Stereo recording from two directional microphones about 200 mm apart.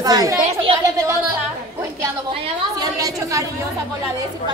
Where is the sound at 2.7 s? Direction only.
15° right (ahead or behind).